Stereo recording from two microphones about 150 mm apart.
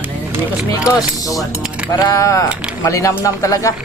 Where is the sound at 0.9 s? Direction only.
25° left (ahead or behind).